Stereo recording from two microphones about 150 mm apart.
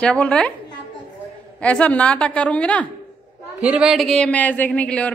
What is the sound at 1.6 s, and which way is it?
Speech, 10° left (ahead or behind).